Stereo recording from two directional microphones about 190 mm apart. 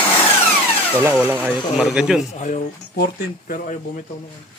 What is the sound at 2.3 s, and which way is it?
Speech, 40° left (ahead or behind).